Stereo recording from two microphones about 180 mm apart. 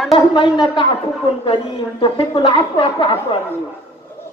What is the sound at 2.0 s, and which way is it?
A man's voice, 30° left (ahead or behind).